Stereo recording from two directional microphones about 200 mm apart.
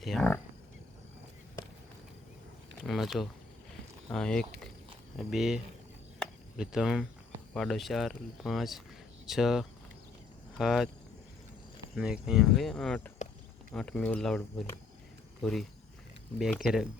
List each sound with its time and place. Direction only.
0.0 s speech: centre (ahead or behind)
2.8 s speech: centre (ahead or behind)
6.1 s cricket: centre (ahead or behind)
7.5 s speech: centre (ahead or behind)
11.9 s speech: 5° right (ahead or behind)
13.2 s a sound: 40° left (ahead or behind)
13.7 s speech: 5° left (ahead or behind)